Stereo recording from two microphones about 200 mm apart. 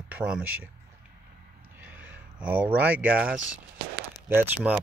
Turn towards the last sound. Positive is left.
turn(degrees=-10)  # may be behind; listen again after turning